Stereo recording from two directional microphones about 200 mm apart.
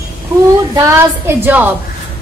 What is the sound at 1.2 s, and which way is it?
Speech, 10° right (ahead or behind).